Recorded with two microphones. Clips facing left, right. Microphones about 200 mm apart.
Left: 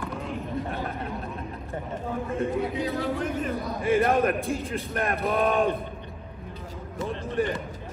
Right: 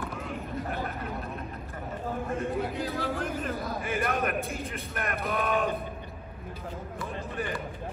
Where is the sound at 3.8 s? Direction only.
30° left (ahead or behind).